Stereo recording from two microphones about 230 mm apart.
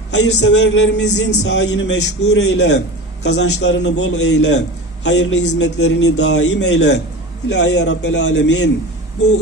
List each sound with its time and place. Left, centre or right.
0.1 s a man's voice: left